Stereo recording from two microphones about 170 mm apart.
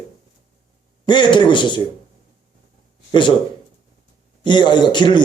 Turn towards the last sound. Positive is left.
turn(degrees=25)  # may be behind; listen again after turning